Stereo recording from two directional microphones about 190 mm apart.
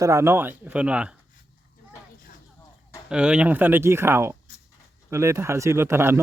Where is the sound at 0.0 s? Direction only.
15° right (ahead or behind).